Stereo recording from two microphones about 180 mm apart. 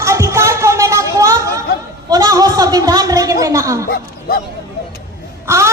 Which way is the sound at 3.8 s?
55° left (ahead or behind).